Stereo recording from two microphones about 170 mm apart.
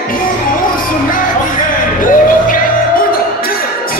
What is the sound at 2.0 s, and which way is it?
Music, 55° left (ahead or behind).